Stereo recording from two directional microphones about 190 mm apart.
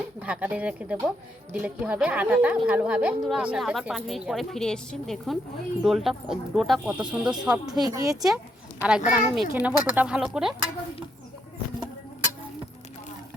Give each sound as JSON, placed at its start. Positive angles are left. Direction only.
{"t": 0.2, "sound": "speech", "side_deg": -10}
{"t": 7.7, "sound": "speech", "side_deg": -20}
{"t": 8.1, "sound": "speech", "side_deg": 0}